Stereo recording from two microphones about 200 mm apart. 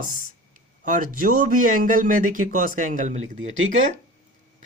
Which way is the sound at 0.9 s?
40° right (ahead or behind).